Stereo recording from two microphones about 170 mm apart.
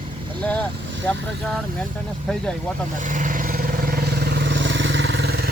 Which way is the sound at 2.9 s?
50° right (ahead or behind).